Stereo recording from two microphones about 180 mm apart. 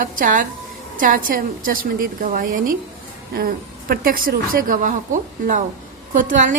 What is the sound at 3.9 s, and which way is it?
A woman's voice, 55° right (ahead or behind).